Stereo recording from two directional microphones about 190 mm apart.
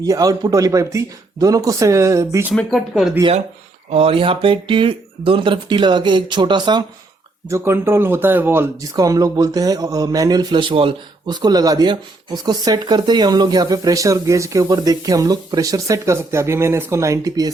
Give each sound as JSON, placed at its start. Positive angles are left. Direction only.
{"t": 0.0, "sound": "a man's voice", "side_deg": -20}
{"t": 2.5, "sound": "speech", "side_deg": 0}
{"t": 3.9, "sound": "speech", "side_deg": -30}